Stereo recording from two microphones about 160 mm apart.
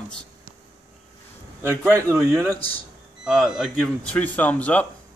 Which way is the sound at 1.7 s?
15° right (ahead or behind).